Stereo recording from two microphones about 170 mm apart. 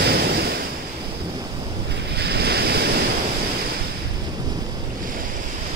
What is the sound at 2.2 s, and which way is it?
Waves, 75° right (ahead or behind).